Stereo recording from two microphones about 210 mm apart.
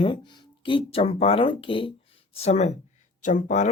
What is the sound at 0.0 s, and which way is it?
Speech, 25° left (ahead or behind).